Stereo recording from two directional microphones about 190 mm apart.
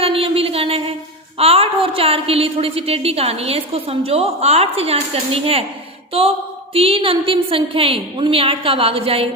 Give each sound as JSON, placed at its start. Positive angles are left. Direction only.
{"t": 0.0, "sound": "a sound", "side_deg": -30}
{"t": 1.4, "sound": "a woman's voice", "side_deg": -30}
{"t": 6.7, "sound": "a woman's voice", "side_deg": -30}